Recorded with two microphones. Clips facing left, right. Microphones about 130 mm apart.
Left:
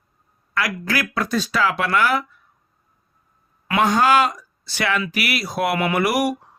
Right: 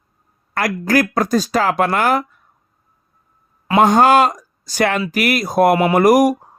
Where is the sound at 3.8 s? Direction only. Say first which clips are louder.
Right 5 dB; 50° right (ahead or behind).